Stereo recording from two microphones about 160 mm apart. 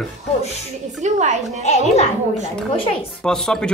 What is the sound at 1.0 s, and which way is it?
Speech, 45° right (ahead or behind).